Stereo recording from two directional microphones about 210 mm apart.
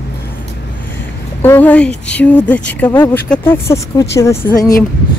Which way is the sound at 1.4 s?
10° left (ahead or behind).